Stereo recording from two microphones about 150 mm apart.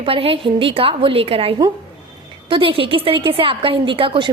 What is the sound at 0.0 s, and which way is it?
A woman's voice, 35° right (ahead or behind).